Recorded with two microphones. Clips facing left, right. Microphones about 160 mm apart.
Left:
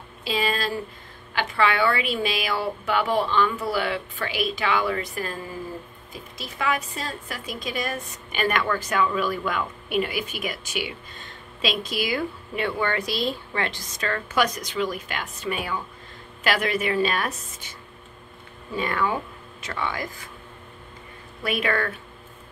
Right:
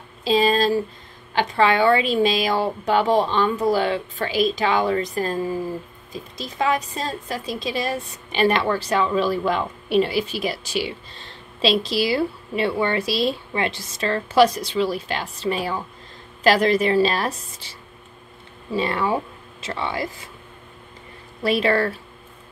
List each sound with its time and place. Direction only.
0.2 s a woman's voice: 35° right (ahead or behind)
21.4 s a woman's voice: 35° right (ahead or behind)